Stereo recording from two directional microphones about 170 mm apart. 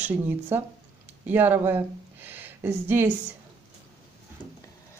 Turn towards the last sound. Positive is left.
turn(degrees=-15)  # may be behind; listen again after turning